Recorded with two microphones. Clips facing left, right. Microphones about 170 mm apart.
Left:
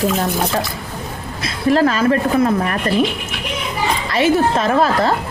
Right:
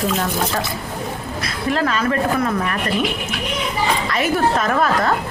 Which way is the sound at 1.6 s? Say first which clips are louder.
Left 6 dB; 40° left (ahead or behind).